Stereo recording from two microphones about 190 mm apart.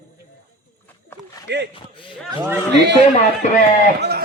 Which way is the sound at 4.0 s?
60° right (ahead or behind).